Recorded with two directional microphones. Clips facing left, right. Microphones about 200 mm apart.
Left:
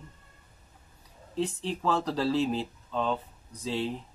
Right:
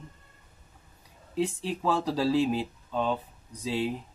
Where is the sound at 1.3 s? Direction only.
10° right (ahead or behind).